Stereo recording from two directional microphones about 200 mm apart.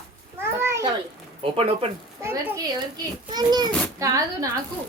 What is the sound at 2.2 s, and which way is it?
A child's voice, 10° right (ahead or behind).